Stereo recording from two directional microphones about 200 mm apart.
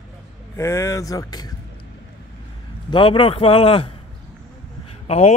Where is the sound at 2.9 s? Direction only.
25° left (ahead or behind).